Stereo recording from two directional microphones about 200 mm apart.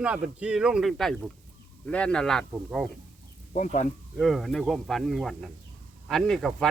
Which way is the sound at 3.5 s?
35° left (ahead or behind).